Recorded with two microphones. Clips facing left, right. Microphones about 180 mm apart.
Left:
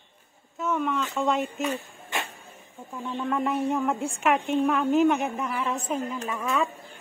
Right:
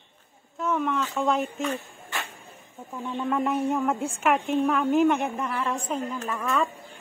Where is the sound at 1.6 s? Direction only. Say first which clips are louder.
Even; 15° left (ahead or behind).